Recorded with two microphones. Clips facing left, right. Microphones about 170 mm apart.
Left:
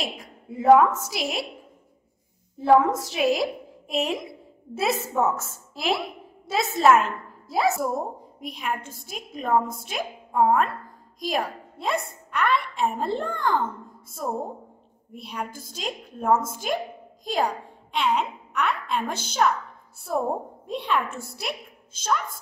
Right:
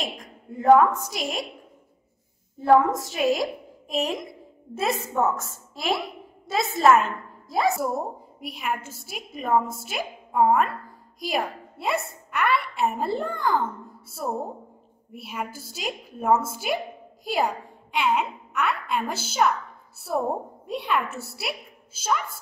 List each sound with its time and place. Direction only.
0.0 s a woman's voice: centre (ahead or behind)
2.6 s a woman's voice: centre (ahead or behind)